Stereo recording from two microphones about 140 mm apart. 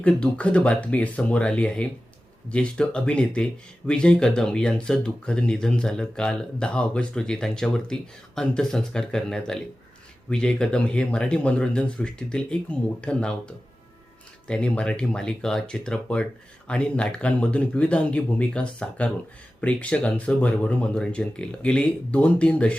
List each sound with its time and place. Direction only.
0.0 s speech: 10° left (ahead or behind)